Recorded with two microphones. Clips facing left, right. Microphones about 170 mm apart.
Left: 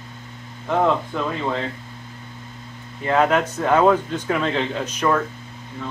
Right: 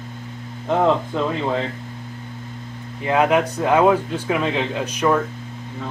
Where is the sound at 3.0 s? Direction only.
10° right (ahead or behind).